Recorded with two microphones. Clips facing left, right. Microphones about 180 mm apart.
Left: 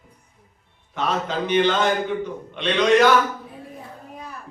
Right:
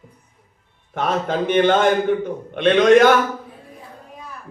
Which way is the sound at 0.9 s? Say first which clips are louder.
Right 3 dB; 55° right (ahead or behind).